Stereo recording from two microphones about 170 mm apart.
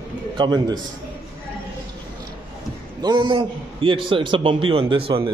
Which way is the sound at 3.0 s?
30° right (ahead or behind).